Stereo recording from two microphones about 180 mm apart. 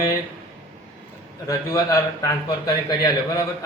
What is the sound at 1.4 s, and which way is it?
A man's voice, 20° left (ahead or behind).